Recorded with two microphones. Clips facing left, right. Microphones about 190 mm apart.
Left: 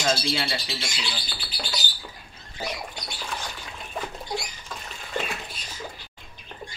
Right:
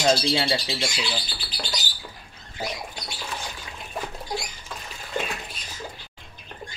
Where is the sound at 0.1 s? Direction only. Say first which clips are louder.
Right 4 dB; 25° right (ahead or behind).